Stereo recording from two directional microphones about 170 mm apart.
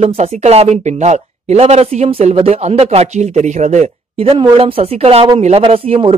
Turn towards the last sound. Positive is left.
turn(degrees=-35)  # may be behind; listen again after turning